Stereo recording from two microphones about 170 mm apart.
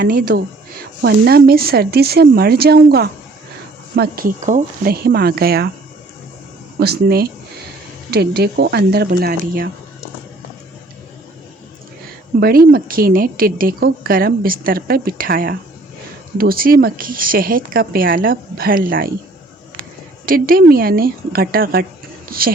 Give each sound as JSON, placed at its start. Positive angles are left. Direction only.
{"t": 0.0, "sound": "a woman's voice", "side_deg": -60}
{"t": 4.4, "sound": "a woman's voice", "side_deg": -45}
{"t": 6.7, "sound": "speech", "side_deg": -70}
{"t": 12.4, "sound": "a woman's voice", "side_deg": -60}
{"t": 20.2, "sound": "a woman's voice", "side_deg": -55}